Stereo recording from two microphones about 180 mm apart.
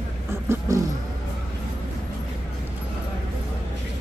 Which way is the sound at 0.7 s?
15° right (ahead or behind).